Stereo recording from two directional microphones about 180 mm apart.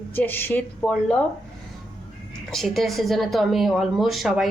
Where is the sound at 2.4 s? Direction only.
Centre (ahead or behind).